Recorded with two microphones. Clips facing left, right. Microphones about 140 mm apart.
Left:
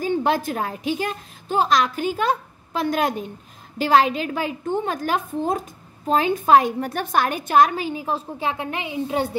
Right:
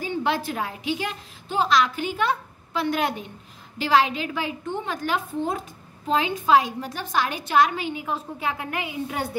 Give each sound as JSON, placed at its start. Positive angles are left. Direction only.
{"t": 0.0, "sound": "a woman's voice", "side_deg": 45}